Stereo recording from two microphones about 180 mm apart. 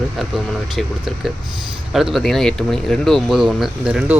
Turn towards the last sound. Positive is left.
turn(degrees=-5)  # may be behind; listen again after turning